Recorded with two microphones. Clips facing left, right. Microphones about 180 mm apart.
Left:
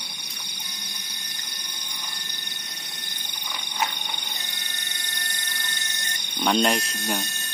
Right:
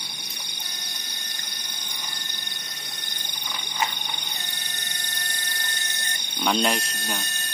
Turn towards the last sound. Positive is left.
turn(degrees=0)  # may be behind; listen again after turning